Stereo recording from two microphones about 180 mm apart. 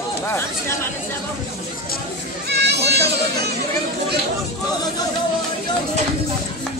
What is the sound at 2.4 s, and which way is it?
Children playing, 65° right (ahead or behind).